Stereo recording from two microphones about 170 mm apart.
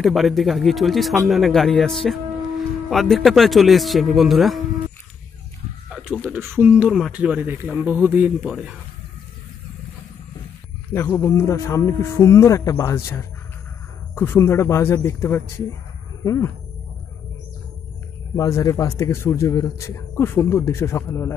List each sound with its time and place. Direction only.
0.0 s a man's voice: centre (ahead or behind)
5.9 s a sound: 5° right (ahead or behind)
6.3 s speech: 10° right (ahead or behind)
10.9 s speech: 15° left (ahead or behind)
18.3 s speech: 20° left (ahead or behind)